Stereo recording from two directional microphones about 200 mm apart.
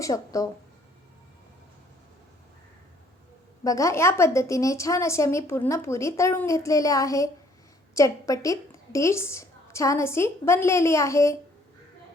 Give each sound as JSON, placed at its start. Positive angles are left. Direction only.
{"t": 0.0, "sound": "a woman's voice", "side_deg": 15}
{"t": 3.6, "sound": "a woman's voice", "side_deg": 15}